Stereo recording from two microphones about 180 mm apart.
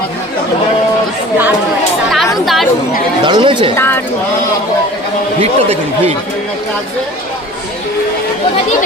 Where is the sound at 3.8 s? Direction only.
10° left (ahead or behind).